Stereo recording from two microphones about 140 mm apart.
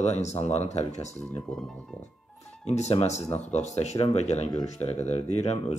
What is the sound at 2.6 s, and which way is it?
Speech, 50° left (ahead or behind).